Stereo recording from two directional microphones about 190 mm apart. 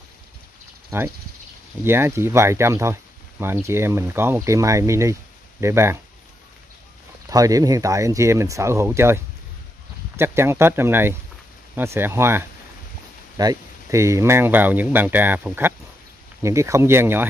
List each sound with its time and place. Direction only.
0.9 s speech: 15° right (ahead or behind)
7.2 s speech: 20° right (ahead or behind)